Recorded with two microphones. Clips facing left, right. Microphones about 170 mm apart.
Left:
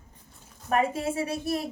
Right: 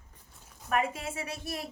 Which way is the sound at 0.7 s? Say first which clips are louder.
Left 5 dB; 30° left (ahead or behind).